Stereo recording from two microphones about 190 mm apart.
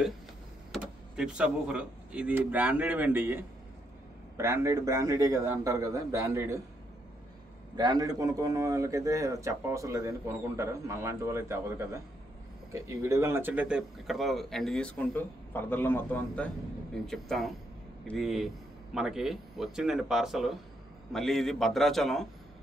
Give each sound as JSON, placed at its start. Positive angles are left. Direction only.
{"t": 0.7, "sound": "a man's voice", "side_deg": -5}
{"t": 7.7, "sound": "a man's voice", "side_deg": -20}